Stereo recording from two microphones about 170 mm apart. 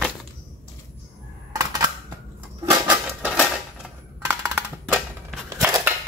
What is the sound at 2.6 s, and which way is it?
Crushing, 5° right (ahead or behind).